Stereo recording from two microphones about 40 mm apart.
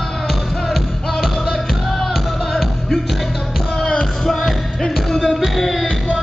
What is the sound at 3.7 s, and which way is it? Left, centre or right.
Music, centre.